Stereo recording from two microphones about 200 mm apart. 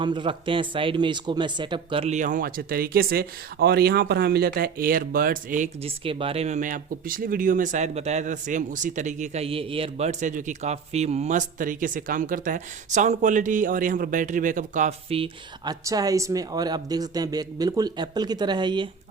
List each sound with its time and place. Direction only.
0.0 s a man's voice: 25° right (ahead or behind)
15.8 s speech: 15° right (ahead or behind)